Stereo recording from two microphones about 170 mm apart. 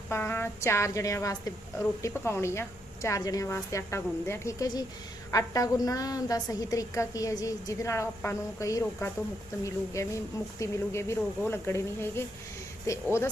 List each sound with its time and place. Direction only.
0.1 s a woman's voice: 15° left (ahead or behind)